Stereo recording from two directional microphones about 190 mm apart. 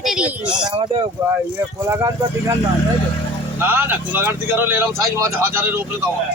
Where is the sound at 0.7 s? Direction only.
25° right (ahead or behind).